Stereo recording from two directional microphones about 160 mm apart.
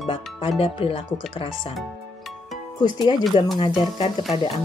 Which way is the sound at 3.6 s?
30° left (ahead or behind).